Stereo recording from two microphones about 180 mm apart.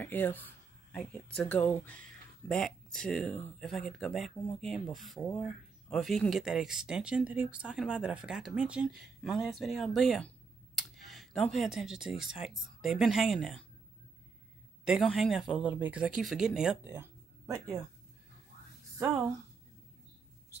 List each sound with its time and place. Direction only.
0.0 s speech: 10° left (ahead or behind)
14.9 s speech: centre (ahead or behind)
16.9 s a sound: 15° right (ahead or behind)